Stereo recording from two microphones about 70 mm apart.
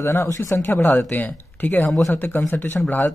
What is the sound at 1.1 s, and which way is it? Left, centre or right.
Speech, left.